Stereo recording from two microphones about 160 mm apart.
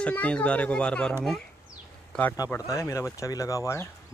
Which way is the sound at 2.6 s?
20° left (ahead or behind).